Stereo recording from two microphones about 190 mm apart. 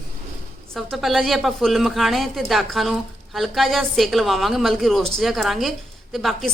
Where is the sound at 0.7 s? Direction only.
Centre (ahead or behind).